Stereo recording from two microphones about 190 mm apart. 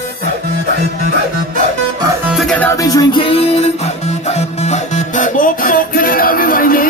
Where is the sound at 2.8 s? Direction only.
20° left (ahead or behind).